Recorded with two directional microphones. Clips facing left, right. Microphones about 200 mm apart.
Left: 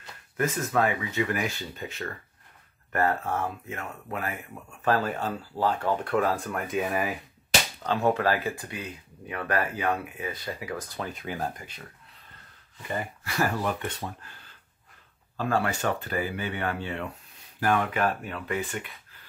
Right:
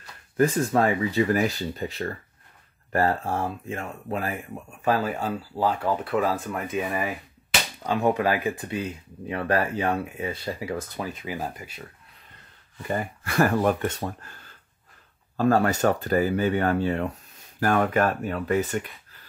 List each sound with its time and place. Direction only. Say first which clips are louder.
0.4 s speech: right 5 dB; 30° right (ahead or behind)
4.8 s speech: right 1 dB; 10° right (ahead or behind)
7.8 s speech: right 2 dB; 15° right (ahead or behind)
11.0 s speech: right 1 dB; 5° right (ahead or behind)
13.2 s speech: right 7 dB; 55° right (ahead or behind)
15.3 s speech: right 6 dB; 40° right (ahead or behind)